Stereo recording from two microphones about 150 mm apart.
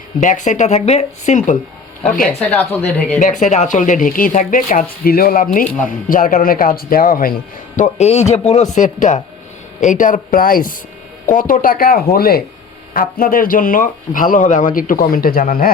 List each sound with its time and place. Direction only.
0.2 s speech: 55° left (ahead or behind)
2.4 s speech: 10° left (ahead or behind)
3.2 s speech: 55° left (ahead or behind); by 7.3 s 70° left (ahead or behind)
7.8 s speech: 45° left (ahead or behind); by 12.0 s 75° left (ahead or behind)
12.1 s speech: 90° left
12.9 s speech: 75° left (ahead or behind)